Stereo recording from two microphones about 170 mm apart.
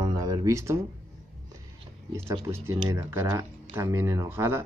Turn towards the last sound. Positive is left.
turn(degrees=-15)  # may be behind; listen again after turning